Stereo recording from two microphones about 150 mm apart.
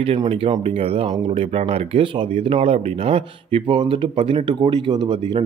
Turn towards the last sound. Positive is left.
turn(degrees=-30)  # may be behind; listen again after turning